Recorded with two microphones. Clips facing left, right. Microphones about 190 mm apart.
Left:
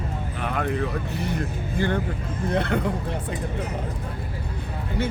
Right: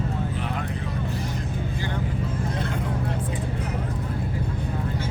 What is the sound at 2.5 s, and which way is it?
Vehicle, 65° left (ahead or behind).